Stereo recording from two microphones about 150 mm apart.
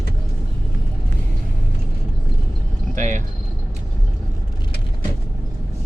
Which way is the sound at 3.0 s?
55° right (ahead or behind).